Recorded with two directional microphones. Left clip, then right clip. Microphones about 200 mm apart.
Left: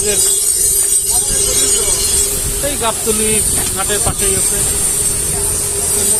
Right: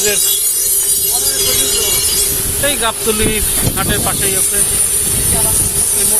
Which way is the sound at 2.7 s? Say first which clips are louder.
Right 1 dB; centre (ahead or behind).